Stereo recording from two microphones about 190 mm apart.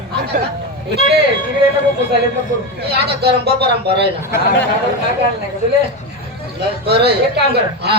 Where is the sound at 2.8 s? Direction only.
60° right (ahead or behind).